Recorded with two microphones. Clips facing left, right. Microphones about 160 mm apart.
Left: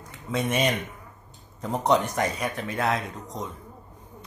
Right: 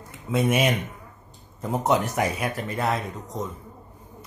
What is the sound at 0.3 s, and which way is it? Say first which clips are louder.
A man's voice: right 3 dB; 5° right (ahead or behind).